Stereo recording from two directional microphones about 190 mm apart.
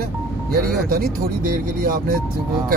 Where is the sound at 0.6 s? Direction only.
50° right (ahead or behind).